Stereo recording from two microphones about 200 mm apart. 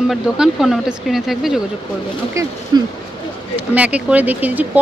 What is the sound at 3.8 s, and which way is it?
Speech, 5° right (ahead or behind).